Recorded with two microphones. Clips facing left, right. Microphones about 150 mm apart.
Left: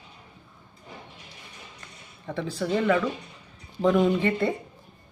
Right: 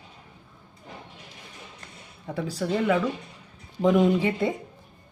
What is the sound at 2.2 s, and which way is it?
Speech, 5° right (ahead or behind).